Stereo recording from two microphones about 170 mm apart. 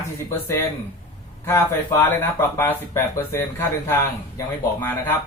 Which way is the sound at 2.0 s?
15° left (ahead or behind).